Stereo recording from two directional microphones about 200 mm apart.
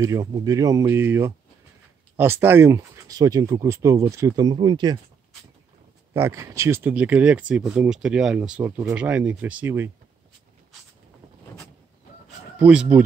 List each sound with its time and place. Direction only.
0.0 s speech: 15° right (ahead or behind)
6.1 s speech: 15° right (ahead or behind)
12.5 s speech: 10° right (ahead or behind)